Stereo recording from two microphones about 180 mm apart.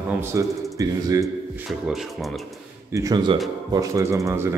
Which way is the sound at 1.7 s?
Centre (ahead or behind).